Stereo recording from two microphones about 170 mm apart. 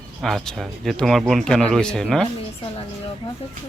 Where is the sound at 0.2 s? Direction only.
Centre (ahead or behind).